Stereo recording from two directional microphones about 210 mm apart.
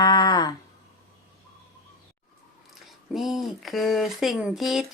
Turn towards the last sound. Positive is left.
turn(degrees=0)  # may be behind; listen again after turning